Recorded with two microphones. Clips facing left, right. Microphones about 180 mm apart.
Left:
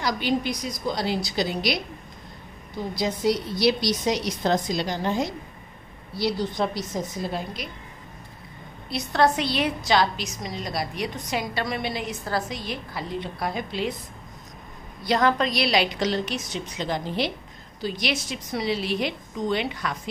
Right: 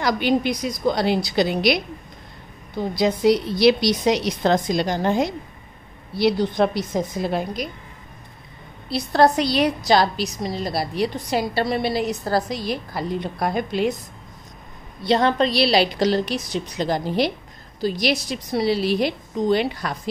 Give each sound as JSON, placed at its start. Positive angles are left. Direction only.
{"t": 0.0, "sound": "a woman's voice", "side_deg": -60}
{"t": 3.0, "sound": "a woman's voice", "side_deg": -65}
{"t": 8.8, "sound": "a woman's voice", "side_deg": -35}
{"t": 15.0, "sound": "a woman's voice", "side_deg": -30}